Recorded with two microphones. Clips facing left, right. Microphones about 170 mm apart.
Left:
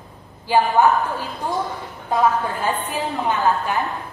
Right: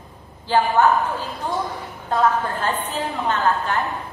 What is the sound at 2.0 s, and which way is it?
A woman's voice, 10° left (ahead or behind).